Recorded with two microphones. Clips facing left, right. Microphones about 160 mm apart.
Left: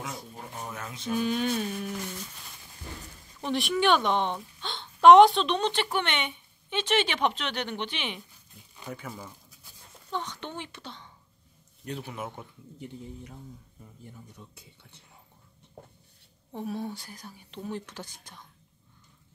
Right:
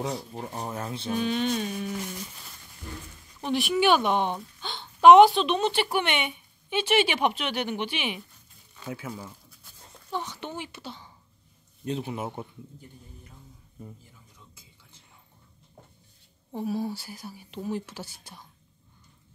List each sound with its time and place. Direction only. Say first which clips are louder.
0.0 s speech: right 7 dB; 35° right (ahead or behind)
1.1 s mantra: even; 5° left (ahead or behind)
3.3 s a woman's voice: right 2 dB; centre (ahead or behind)
8.8 s mantra: right 3 dB; 5° right (ahead or behind)
10.1 s a woman's voice: right 1 dB; 5° right (ahead or behind)
11.8 s speech: right 5 dB; 25° right (ahead or behind)
12.7 s speech: left 8 dB; 75° left (ahead or behind)
16.5 s a woman's voice: right 4 dB; 5° right (ahead or behind)